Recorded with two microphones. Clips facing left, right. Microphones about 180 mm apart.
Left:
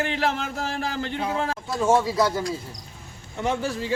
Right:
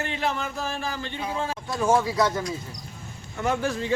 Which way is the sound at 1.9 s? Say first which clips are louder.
Left 1 dB; centre (ahead or behind).